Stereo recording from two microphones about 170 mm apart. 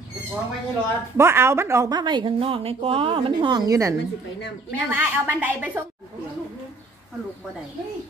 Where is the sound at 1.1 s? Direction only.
15° right (ahead or behind).